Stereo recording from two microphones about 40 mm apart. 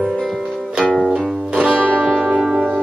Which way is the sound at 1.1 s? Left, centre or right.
Centre.